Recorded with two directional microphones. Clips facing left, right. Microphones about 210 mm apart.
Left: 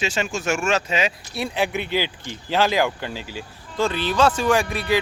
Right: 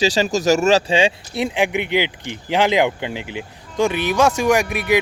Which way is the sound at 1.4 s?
15° right (ahead or behind).